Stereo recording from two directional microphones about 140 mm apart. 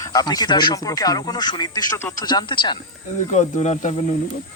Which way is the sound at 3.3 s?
60° left (ahead or behind).